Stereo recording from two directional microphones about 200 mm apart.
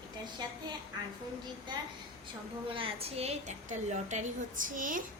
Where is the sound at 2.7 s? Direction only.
30° right (ahead or behind).